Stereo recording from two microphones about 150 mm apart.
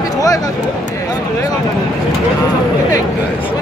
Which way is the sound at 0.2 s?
25° left (ahead or behind).